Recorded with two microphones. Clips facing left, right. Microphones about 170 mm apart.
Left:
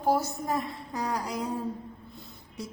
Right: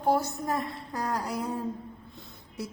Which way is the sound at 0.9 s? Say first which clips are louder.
Even; 15° left (ahead or behind).